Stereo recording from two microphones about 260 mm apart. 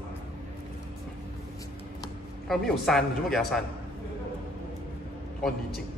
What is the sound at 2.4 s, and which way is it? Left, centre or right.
A man's voice, centre.